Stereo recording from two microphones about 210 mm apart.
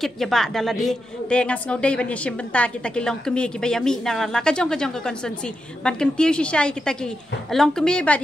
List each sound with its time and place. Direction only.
0.0 s a woman's voice: centre (ahead or behind)